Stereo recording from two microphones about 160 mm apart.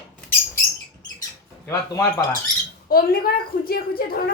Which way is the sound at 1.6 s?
20° left (ahead or behind).